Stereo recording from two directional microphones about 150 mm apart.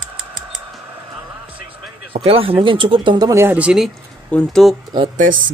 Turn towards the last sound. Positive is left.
turn(degrees=-60)  # may be behind; listen again after turning